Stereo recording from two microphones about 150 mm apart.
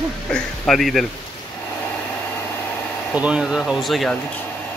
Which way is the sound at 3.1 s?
5° right (ahead or behind).